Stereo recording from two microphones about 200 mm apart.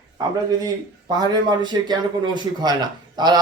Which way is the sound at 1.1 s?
20° right (ahead or behind).